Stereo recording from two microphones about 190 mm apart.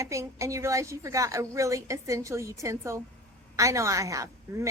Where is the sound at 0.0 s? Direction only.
15° right (ahead or behind).